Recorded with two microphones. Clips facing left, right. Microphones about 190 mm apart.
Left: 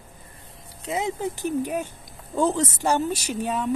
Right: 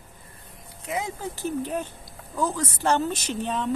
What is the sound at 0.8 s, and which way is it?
Speech, 25° left (ahead or behind).